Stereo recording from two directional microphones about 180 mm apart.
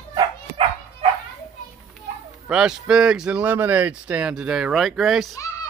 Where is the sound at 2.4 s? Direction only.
5° right (ahead or behind).